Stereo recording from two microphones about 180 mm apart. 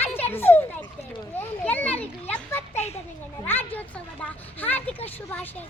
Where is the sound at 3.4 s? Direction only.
10° left (ahead or behind).